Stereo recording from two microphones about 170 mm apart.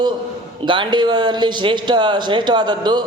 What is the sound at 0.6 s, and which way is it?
Speech, 30° right (ahead or behind).